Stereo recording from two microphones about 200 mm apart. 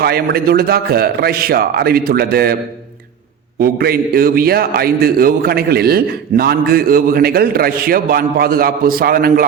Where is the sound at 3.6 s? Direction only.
50° right (ahead or behind).